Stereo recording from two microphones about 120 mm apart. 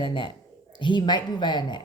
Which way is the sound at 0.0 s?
40° left (ahead or behind).